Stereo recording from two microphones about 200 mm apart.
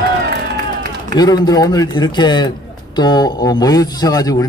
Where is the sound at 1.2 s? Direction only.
20° left (ahead or behind).